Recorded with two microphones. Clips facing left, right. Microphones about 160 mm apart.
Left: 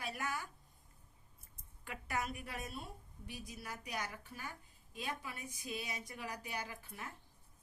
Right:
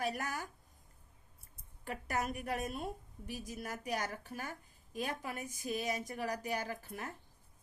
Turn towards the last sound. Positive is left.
turn(degrees=-45)  # may be behind; listen again after turning